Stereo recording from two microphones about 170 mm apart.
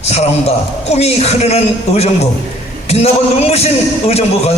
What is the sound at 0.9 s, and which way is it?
A man's voice, 40° left (ahead or behind).